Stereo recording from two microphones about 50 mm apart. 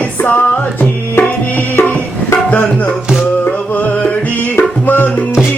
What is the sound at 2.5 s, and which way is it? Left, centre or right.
Music, left.